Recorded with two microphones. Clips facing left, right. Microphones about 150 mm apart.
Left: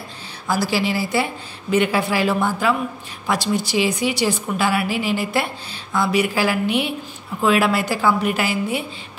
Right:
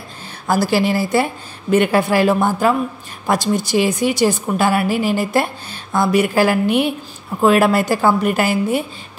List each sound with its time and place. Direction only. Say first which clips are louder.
0.5 s a woman's voice: right 5 dB; 50° right (ahead or behind)